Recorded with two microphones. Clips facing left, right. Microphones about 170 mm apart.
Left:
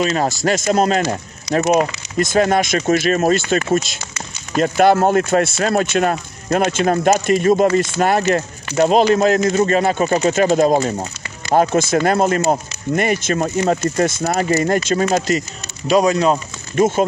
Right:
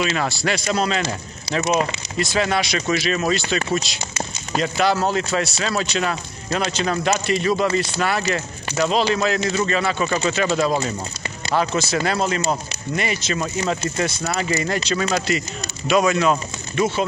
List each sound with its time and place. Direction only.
0.0 s speech: 40° left (ahead or behind)